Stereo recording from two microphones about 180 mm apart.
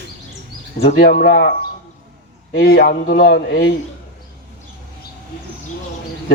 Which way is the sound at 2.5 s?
55° left (ahead or behind).